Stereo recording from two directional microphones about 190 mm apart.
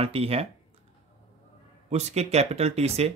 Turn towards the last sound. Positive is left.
turn(degrees=-35)  # may be behind; listen again after turning